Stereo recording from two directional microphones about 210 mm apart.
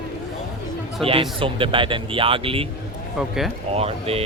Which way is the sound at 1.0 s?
25° right (ahead or behind).